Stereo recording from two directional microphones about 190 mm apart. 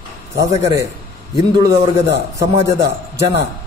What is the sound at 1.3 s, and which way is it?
A man's voice, 20° right (ahead or behind).